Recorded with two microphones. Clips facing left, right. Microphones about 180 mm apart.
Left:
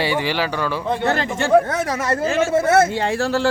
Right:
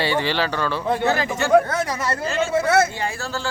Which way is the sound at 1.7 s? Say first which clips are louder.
Left 3 dB; 45° left (ahead or behind).